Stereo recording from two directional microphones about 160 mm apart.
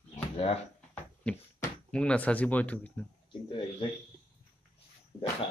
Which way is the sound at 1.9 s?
5° left (ahead or behind).